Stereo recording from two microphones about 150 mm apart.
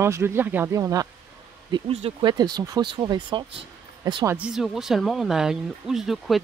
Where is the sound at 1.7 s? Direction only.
35° right (ahead or behind).